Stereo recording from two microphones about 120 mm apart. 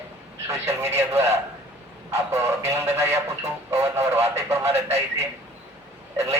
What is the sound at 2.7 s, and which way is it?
Speech, 20° right (ahead or behind).